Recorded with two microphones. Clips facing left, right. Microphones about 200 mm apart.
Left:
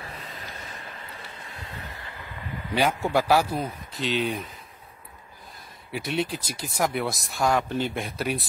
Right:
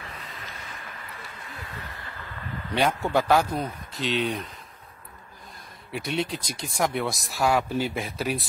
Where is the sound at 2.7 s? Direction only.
5° left (ahead or behind).